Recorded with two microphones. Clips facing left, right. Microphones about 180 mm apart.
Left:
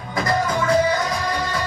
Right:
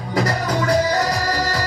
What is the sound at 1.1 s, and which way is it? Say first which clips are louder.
Music: right 2 dB; 80° right.